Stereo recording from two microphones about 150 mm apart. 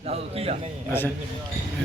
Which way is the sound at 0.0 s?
45° right (ahead or behind).